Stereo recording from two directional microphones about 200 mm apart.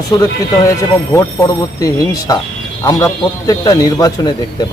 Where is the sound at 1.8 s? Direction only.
15° left (ahead or behind).